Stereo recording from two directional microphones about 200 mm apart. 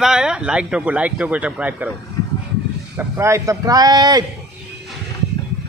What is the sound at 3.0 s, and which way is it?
Speech, 15° right (ahead or behind).